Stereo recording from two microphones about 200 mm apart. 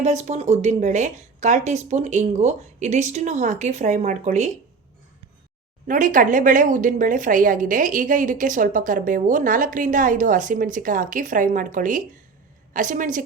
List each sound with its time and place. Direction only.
0.0 s a woman's voice: 35° right (ahead or behind)
5.9 s a woman's voice: 40° right (ahead or behind)